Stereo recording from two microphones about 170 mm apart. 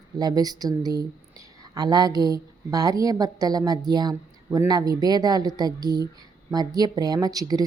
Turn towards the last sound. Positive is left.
turn(degrees=-20)  # may be behind; listen again after turning